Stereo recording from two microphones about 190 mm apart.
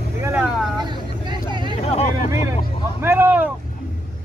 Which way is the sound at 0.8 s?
25° right (ahead or behind).